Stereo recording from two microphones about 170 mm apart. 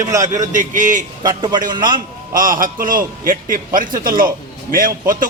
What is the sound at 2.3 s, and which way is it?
A man's voice, 55° right (ahead or behind).